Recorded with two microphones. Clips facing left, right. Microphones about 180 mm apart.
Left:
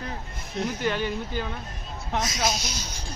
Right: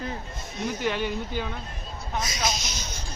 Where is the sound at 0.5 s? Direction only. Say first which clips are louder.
Left 1 dB; centre (ahead or behind).